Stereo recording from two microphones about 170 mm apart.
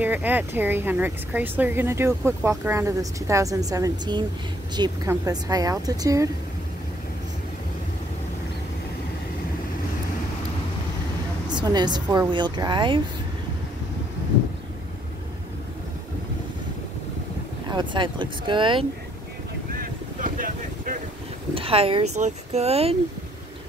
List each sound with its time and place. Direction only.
0.0 s speech: 10° right (ahead or behind)
11.4 s speech: 25° right (ahead or behind)
17.6 s speech: 25° right (ahead or behind)
19.7 s boat: 55° right (ahead or behind)
21.5 s speech: 35° right (ahead or behind)